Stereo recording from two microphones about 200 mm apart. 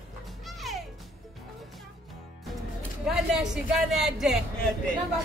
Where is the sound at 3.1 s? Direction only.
5° right (ahead or behind).